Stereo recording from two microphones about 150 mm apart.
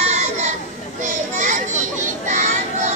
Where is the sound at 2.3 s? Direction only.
55° right (ahead or behind).